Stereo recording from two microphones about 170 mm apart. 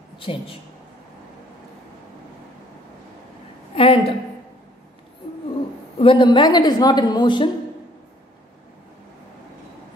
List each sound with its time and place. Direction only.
0.2 s a woman's voice: 30° left (ahead or behind)
3.7 s a sound: 35° left (ahead or behind)
5.9 s a woman's voice: 30° left (ahead or behind)